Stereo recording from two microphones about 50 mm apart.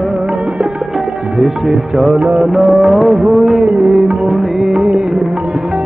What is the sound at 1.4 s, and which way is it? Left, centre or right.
Music, centre.